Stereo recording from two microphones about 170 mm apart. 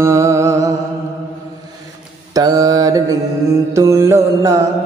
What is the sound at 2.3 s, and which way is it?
Mantra, 20° right (ahead or behind).